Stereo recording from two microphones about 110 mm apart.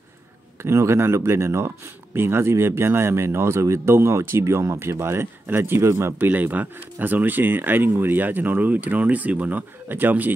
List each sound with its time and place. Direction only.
0.6 s speech: 25° right (ahead or behind)